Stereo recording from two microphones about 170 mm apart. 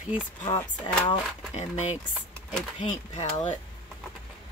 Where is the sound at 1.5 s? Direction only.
40° left (ahead or behind).